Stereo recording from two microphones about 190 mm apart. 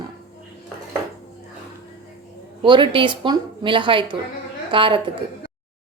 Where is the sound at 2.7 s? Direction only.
25° right (ahead or behind).